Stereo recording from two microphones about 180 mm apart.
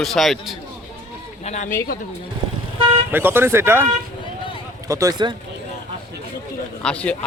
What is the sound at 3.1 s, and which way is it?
Speech, 10° right (ahead or behind).